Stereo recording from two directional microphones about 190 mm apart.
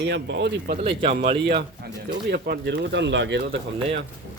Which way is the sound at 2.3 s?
60° right (ahead or behind).